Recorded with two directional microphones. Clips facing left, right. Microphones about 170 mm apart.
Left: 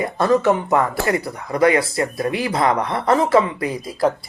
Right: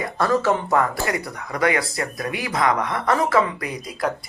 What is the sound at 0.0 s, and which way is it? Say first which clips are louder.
Speech: left 4 dB; 20° left (ahead or behind).